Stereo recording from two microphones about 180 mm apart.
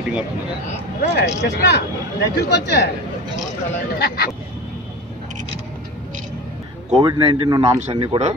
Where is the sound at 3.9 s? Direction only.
60° left (ahead or behind).